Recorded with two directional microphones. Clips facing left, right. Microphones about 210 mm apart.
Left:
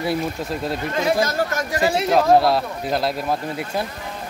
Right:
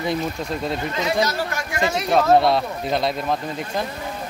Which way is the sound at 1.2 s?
45° left (ahead or behind).